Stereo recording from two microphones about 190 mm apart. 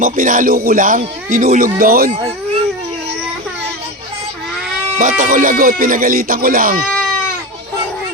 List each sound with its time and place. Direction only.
0.0 s speech: 45° right (ahead or behind)
4.9 s speech: 40° right (ahead or behind)